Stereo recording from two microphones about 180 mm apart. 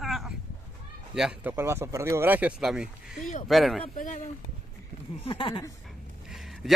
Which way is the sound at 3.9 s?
45° left (ahead or behind).